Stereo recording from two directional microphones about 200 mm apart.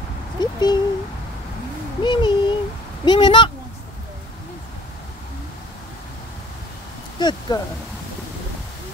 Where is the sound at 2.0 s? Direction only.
25° left (ahead or behind).